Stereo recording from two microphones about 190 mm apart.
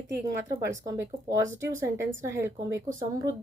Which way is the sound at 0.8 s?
15° right (ahead or behind).